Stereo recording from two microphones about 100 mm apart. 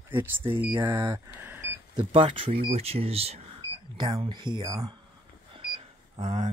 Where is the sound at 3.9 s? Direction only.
45° right (ahead or behind).